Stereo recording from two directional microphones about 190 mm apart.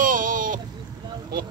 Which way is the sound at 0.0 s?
45° right (ahead or behind).